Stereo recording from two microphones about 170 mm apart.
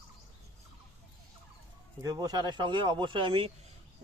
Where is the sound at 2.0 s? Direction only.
20° right (ahead or behind).